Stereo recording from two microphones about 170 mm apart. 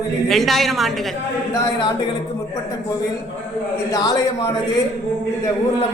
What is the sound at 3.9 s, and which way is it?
Speech, 20° left (ahead or behind).